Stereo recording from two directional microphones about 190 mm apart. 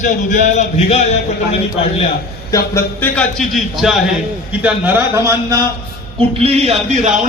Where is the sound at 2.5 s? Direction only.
15° left (ahead or behind).